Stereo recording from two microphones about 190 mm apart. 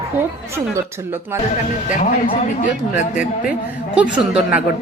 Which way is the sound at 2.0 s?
35° left (ahead or behind).